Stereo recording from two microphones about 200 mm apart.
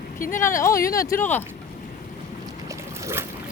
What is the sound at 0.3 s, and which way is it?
Speech, 15° left (ahead or behind).